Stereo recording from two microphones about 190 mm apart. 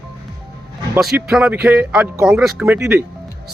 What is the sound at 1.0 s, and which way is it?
Speech, 5° right (ahead or behind).